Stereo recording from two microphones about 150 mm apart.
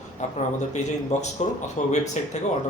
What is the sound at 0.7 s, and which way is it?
Speech, 50° left (ahead or behind).